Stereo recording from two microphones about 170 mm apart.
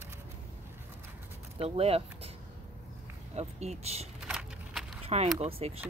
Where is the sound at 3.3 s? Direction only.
40° right (ahead or behind).